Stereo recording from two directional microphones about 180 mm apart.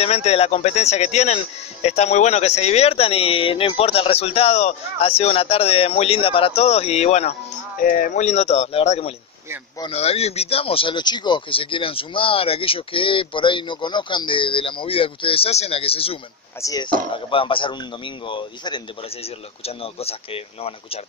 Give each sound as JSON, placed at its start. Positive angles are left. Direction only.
{"t": 0.0, "sound": "speech", "side_deg": 35}
{"t": 7.8, "sound": "speech", "side_deg": 45}
{"t": 16.6, "sound": "speech", "side_deg": 20}